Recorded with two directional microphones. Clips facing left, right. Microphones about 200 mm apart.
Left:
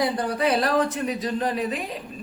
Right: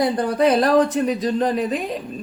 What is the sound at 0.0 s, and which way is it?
A woman's voice, 45° right (ahead or behind).